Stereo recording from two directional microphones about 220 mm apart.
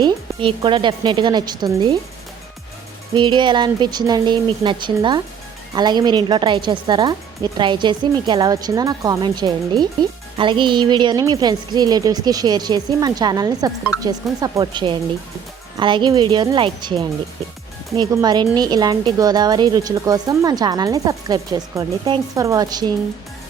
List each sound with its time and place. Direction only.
0.0 s speech: 20° right (ahead or behind)
3.2 s speech: 20° right (ahead or behind)